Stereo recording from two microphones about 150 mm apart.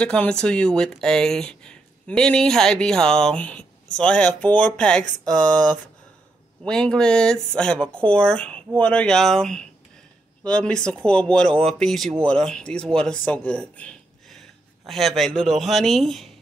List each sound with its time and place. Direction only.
0.0 s speech: 5° left (ahead or behind)